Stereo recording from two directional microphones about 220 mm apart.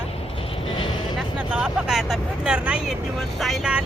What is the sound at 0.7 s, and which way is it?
Speech, 20° left (ahead or behind).